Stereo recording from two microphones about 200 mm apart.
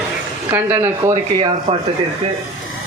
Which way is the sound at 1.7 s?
25° right (ahead or behind).